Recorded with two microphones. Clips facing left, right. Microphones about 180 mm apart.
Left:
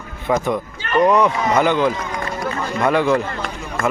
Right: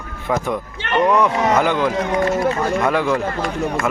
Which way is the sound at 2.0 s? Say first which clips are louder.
Right 8 dB; 70° right (ahead or behind).